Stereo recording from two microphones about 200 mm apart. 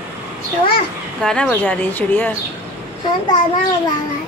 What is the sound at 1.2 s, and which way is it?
Speech, 5° left (ahead or behind).